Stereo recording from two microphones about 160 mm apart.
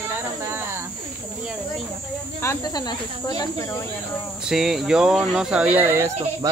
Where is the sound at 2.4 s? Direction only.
20° left (ahead or behind).